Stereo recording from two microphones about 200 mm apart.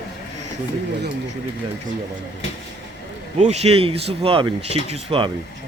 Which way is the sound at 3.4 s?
30° right (ahead or behind).